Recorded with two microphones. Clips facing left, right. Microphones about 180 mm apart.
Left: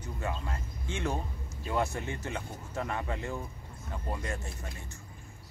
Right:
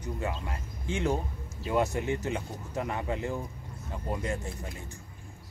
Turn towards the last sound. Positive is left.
turn(degrees=-15)  # may be behind; listen again after turning